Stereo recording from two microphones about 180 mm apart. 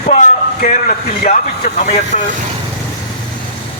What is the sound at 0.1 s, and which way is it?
Speech, 45° left (ahead or behind).